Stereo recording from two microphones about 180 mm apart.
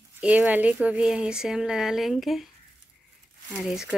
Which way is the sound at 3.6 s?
Centre (ahead or behind).